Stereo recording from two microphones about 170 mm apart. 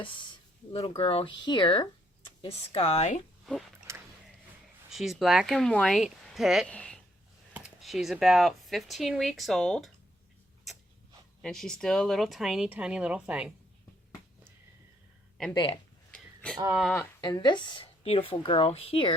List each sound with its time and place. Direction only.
0.7 s speech: 35° left (ahead or behind)
3.4 s speech: centre (ahead or behind)
3.9 s a sound: 15° right (ahead or behind)
4.9 s speech: centre (ahead or behind)
11.4 s speech: 5° left (ahead or behind)
15.5 s speech: 25° left (ahead or behind)
16.1 s a sound: 5° left (ahead or behind)
17.2 s speech: 25° left (ahead or behind)